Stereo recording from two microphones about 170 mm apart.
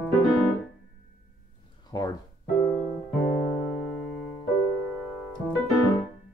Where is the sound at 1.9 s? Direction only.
20° left (ahead or behind).